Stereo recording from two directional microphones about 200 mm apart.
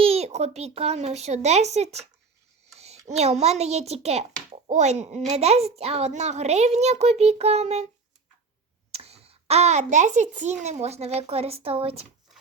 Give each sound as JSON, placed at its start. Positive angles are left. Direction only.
{"t": 0.0, "sound": "a woman's voice", "side_deg": -30}
{"t": 8.9, "sound": "a child's voice", "side_deg": -30}